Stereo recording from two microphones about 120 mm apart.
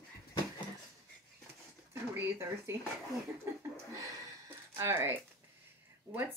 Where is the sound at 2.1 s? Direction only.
20° right (ahead or behind).